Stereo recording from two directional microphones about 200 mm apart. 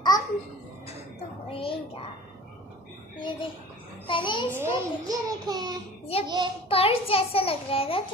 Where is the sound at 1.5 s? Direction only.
25° left (ahead or behind).